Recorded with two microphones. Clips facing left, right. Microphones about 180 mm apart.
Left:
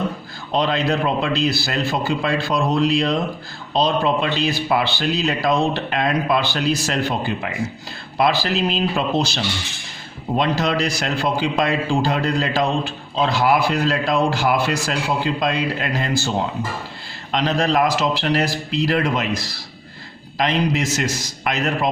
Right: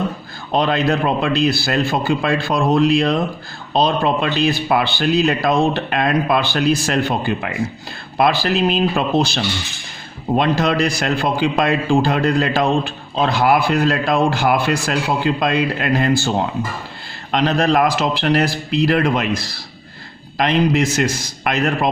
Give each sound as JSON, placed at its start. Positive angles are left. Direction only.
{"t": 0.5, "sound": "a man's voice", "side_deg": -55}
{"t": 17.3, "sound": "a man's voice", "side_deg": -55}